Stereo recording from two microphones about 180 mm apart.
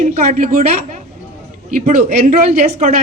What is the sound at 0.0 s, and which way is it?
Speech, 40° right (ahead or behind).